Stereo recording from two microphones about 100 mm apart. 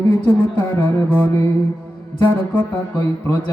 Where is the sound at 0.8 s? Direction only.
20° left (ahead or behind).